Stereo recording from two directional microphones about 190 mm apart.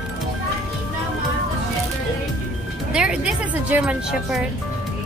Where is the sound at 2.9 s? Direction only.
5° right (ahead or behind).